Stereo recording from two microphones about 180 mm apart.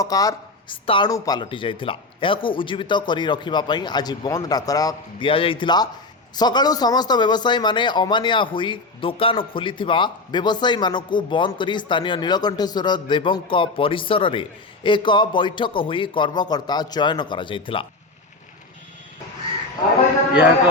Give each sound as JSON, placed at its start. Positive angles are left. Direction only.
{"t": 0.0, "sound": "a man's voice", "side_deg": 20}